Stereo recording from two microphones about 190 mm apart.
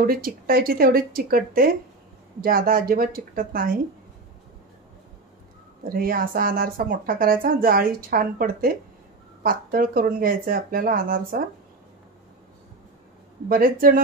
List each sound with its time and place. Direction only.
0.0 s speech: 50° right (ahead or behind)
5.9 s speech: 50° right (ahead or behind)
13.5 s speech: 50° right (ahead or behind)